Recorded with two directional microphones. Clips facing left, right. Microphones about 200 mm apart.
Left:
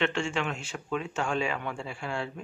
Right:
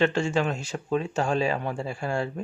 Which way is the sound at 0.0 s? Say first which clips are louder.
Right 6 dB; 40° right (ahead or behind).